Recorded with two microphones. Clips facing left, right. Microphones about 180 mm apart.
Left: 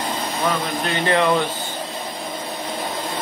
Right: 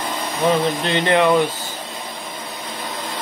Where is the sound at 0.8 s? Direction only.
25° right (ahead or behind).